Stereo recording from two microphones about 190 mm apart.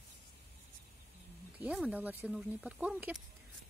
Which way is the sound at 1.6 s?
5° right (ahead or behind).